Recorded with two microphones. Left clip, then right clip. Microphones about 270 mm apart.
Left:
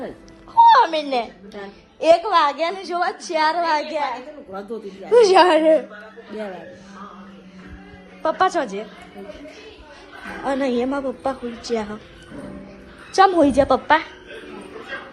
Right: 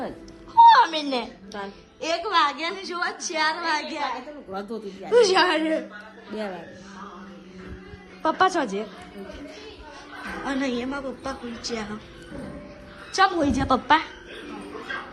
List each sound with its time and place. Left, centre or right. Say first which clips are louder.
0.5 s a woman's voice: left 2 dB; centre
5.1 s a woman's voice: left 6 dB; centre
8.2 s a woman's voice: left 2 dB; centre
10.4 s a woman's voice: left 7 dB; centre
13.1 s a woman's voice: left 6 dB; centre
13.7 s a woman's voice: left 3 dB; centre